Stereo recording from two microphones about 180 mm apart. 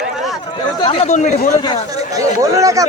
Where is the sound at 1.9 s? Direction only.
20° right (ahead or behind).